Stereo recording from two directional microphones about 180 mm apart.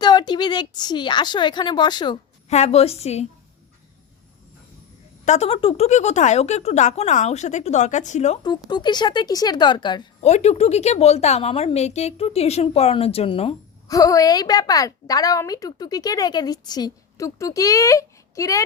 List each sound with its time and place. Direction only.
0.0 s a woman's voice: 25° left (ahead or behind)
2.5 s a woman's voice: 35° left (ahead or behind)
5.2 s a woman's voice: 40° left (ahead or behind)
8.4 s a woman's voice: 25° left (ahead or behind)
10.2 s a woman's voice: 35° left (ahead or behind)
13.8 s a woman's voice: 20° left (ahead or behind)